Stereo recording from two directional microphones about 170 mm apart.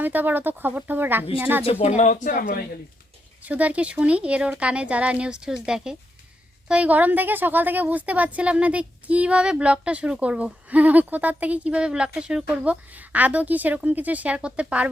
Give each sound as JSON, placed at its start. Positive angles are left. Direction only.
{"t": 0.0, "sound": "a woman's voice", "side_deg": -10}
{"t": 1.6, "sound": "speech", "side_deg": 35}
{"t": 3.4, "sound": "a woman's voice", "side_deg": -10}